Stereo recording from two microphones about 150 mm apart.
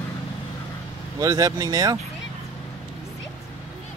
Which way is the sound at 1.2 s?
20° right (ahead or behind).